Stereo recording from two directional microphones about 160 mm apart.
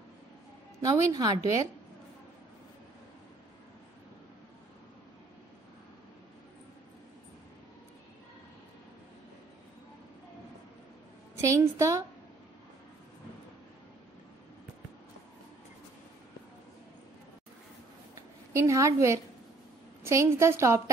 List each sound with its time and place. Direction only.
0.8 s a woman's voice: 25° right (ahead or behind)
11.4 s a woman's voice: 20° right (ahead or behind)
18.5 s a woman's voice: 20° right (ahead or behind)